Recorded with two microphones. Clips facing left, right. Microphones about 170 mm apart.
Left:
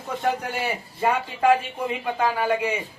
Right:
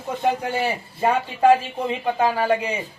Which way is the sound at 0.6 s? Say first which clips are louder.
Right 1 dB; 25° right (ahead or behind).